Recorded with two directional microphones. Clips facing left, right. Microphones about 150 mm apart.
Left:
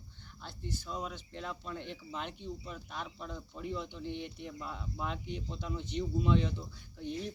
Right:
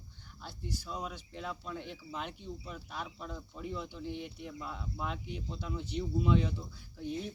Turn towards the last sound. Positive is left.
turn(degrees=0)  # may be behind; listen again after turning